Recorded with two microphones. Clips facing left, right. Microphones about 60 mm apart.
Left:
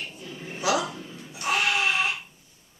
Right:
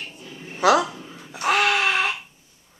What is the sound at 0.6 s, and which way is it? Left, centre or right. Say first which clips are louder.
Speech: right 8 dB; right.